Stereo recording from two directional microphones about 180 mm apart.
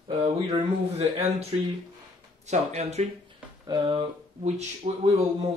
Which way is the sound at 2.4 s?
40° right (ahead or behind).